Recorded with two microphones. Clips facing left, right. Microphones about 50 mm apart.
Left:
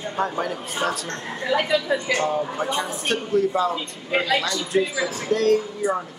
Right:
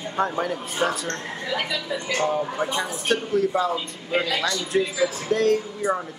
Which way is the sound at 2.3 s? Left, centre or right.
Centre.